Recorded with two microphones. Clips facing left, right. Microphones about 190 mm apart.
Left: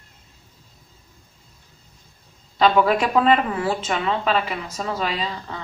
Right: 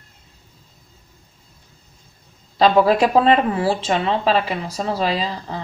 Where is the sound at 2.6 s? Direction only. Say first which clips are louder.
Right 3 dB; 35° right (ahead or behind).